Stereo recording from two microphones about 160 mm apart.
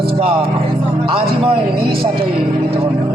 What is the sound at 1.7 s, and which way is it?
Speech, 70° right (ahead or behind).